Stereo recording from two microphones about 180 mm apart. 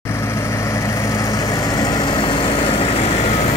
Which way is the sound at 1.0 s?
20° left (ahead or behind).